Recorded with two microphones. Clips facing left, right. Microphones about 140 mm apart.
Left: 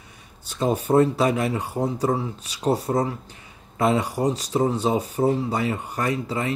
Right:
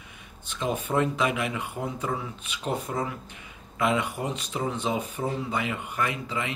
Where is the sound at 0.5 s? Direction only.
35° left (ahead or behind).